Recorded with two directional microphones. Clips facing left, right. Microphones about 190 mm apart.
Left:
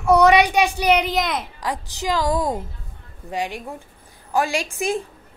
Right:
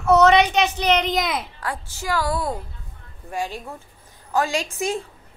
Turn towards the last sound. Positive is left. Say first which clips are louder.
# left 1 dB
turn(degrees=15)  # may be behind; listen again after turning